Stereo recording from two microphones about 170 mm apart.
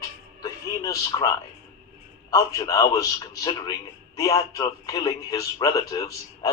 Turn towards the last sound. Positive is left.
turn(degrees=20)  # may be behind; listen again after turning